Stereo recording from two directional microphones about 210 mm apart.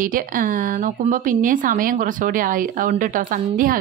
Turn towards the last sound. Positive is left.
turn(degrees=-40)  # may be behind; listen again after turning